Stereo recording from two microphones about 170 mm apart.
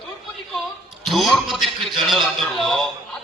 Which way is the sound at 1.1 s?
Centre (ahead or behind).